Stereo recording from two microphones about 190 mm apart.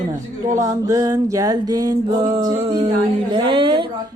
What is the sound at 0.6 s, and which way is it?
Music, 15° right (ahead or behind).